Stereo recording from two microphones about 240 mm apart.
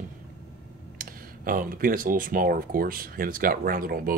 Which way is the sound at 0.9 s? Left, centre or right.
Right.